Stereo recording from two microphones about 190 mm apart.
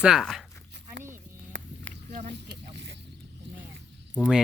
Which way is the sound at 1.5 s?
65° right (ahead or behind).